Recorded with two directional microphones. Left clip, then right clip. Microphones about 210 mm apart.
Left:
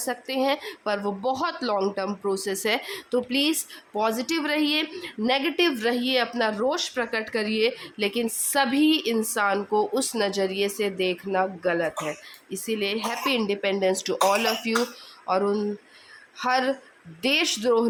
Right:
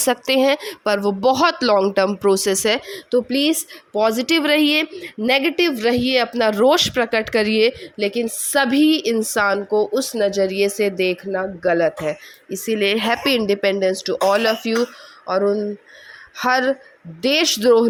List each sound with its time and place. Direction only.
0.0 s a woman's voice: 35° right (ahead or behind)
7.8 s a woman's voice: 20° right (ahead or behind)
9.6 s a woman's voice: 15° right (ahead or behind)